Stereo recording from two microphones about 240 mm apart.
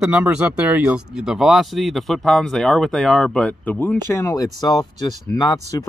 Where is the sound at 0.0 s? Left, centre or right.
Centre.